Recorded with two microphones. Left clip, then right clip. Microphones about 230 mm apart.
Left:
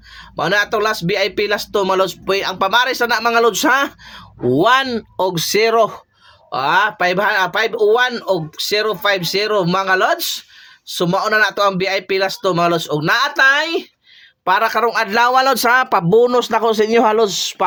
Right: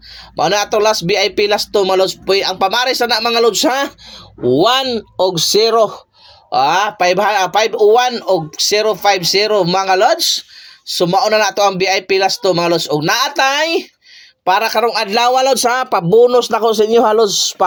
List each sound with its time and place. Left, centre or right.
0.3 s speech: centre
17.2 s speech: left